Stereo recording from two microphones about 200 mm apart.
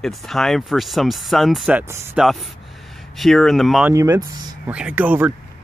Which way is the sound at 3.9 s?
15° right (ahead or behind).